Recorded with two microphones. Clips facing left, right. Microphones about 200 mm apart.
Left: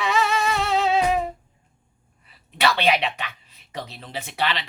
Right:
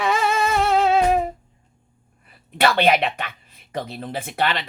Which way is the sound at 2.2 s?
50° right (ahead or behind).